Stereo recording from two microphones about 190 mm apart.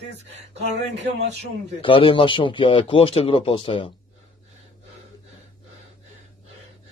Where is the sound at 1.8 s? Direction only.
25° left (ahead or behind).